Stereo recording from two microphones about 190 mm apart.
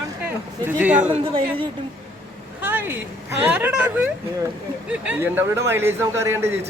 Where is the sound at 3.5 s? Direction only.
5° right (ahead or behind).